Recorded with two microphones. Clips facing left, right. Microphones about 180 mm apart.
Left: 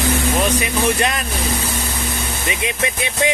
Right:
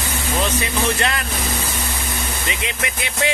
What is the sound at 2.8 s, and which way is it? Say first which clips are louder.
Speech: left 4 dB; 25° left (ahead or behind).